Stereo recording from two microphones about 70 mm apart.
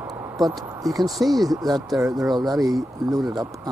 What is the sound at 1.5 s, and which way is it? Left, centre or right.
Speech, right.